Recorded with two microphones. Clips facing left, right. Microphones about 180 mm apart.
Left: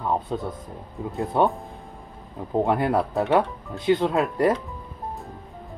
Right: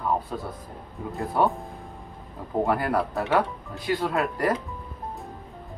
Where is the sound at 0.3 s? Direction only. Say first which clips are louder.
Left 4 dB; 25° left (ahead or behind).